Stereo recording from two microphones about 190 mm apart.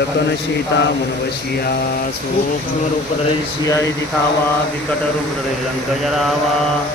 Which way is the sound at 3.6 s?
15° left (ahead or behind).